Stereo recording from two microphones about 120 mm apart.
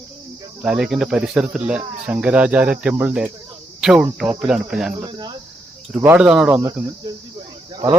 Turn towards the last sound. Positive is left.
turn(degrees=-40)  # may be behind; listen again after turning